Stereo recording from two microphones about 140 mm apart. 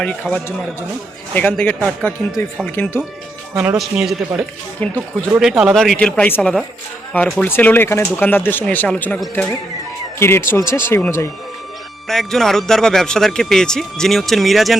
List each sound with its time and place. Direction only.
0.0 s speech: 5° left (ahead or behind)
3.5 s speech: 15° right (ahead or behind)
3.8 s a man's voice: centre (ahead or behind)
4.8 s speech: 10° left (ahead or behind)
5.4 s a man's voice: 5° right (ahead or behind); by 11.3 s 15° left (ahead or behind)
12.0 s a man's voice: 5° left (ahead or behind)